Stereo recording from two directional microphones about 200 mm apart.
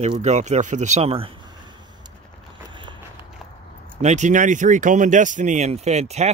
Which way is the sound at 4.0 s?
35° right (ahead or behind).